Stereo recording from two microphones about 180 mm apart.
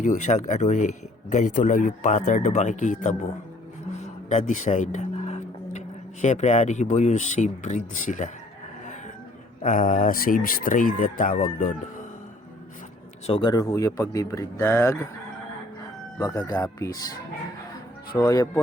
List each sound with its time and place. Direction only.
0.0 s speech: 40° left (ahead or behind)
4.0 s a sound: 40° left (ahead or behind)
6.2 s speech: 40° left (ahead or behind)
9.6 s speech: 50° left (ahead or behind)
13.2 s a man's voice: 30° left (ahead or behind); by 15.0 s 15° left (ahead or behind)
16.2 s speech: 20° left (ahead or behind)
18.1 s speech: 20° left (ahead or behind)